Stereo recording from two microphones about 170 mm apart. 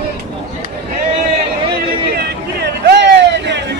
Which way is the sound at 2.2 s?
70° right (ahead or behind).